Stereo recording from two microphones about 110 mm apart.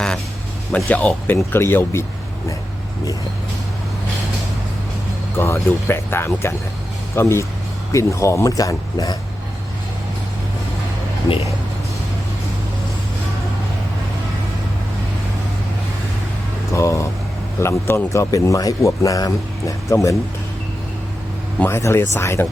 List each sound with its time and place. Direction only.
0.9 s a man's voice: 15° left (ahead or behind)
5.4 s a man's voice: 20° left (ahead or behind)
16.7 s a sound: 25° left (ahead or behind)
17.6 s a man's voice: 25° left (ahead or behind)
21.6 s a man's voice: 25° left (ahead or behind)